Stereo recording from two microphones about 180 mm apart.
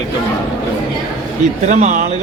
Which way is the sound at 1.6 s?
40° right (ahead or behind).